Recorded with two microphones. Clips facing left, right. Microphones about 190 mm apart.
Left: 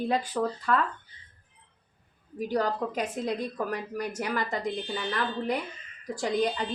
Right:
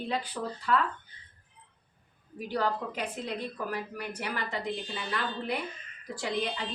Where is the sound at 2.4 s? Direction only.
40° left (ahead or behind).